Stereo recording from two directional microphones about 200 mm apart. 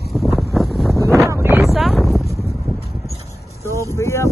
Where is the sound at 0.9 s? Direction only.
15° right (ahead or behind).